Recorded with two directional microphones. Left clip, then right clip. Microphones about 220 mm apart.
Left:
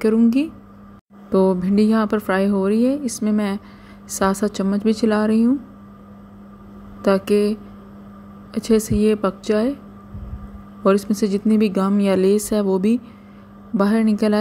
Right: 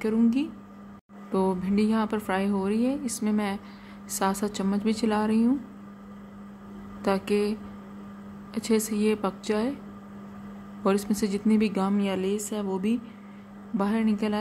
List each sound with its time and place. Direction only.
0.0 s a woman's voice: 20° left (ahead or behind)
7.0 s a woman's voice: 15° left (ahead or behind)
8.5 s a woman's voice: 15° left (ahead or behind)
10.8 s a woman's voice: 15° left (ahead or behind)